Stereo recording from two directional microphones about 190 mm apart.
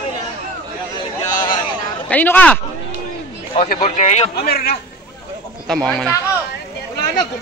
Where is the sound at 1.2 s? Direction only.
20° left (ahead or behind).